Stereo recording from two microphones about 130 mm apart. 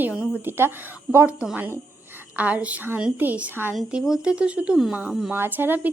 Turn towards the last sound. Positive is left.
turn(degrees=-15)  # may be behind; listen again after turning